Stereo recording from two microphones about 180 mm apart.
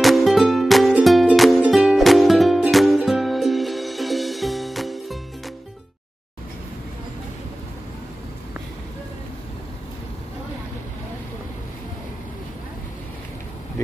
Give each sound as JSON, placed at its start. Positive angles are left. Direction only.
{"t": 0.0, "sound": "music", "side_deg": 0}